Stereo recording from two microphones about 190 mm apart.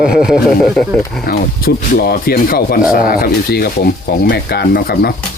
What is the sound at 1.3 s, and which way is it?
Speech, 50° left (ahead or behind).